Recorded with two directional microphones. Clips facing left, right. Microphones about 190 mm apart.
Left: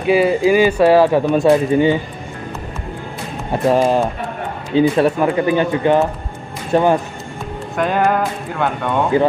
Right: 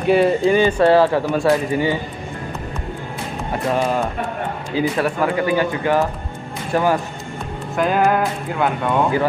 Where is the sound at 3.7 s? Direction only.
30° left (ahead or behind).